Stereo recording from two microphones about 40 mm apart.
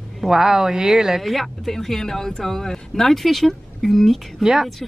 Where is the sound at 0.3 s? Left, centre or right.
Centre.